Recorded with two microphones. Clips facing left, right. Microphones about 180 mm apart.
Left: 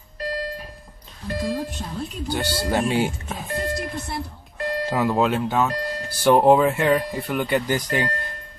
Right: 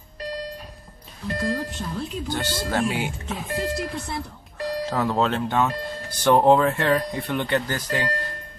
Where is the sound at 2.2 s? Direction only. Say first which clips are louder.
Left 6 dB; 10° left (ahead or behind).